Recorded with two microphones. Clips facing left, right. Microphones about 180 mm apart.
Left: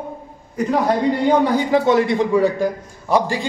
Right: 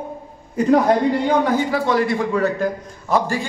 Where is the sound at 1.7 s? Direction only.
20° left (ahead or behind).